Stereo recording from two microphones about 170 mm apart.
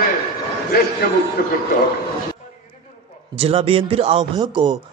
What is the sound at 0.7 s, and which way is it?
Speech, 65° left (ahead or behind).